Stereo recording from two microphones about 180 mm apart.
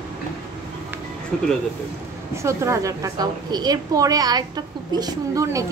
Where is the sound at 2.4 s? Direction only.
15° right (ahead or behind).